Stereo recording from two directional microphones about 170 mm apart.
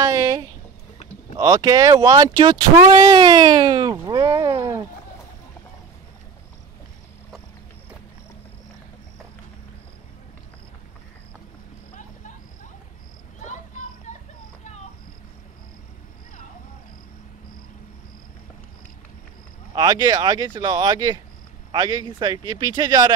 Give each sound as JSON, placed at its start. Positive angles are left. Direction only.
{"t": 0.0, "sound": "a sound", "side_deg": -20}
{"t": 1.3, "sound": "speech", "side_deg": -20}
{"t": 2.8, "sound": "cat", "side_deg": -30}
{"t": 19.7, "sound": "speech", "side_deg": -25}